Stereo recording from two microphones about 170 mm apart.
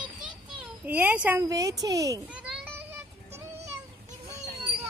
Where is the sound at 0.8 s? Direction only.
10° right (ahead or behind).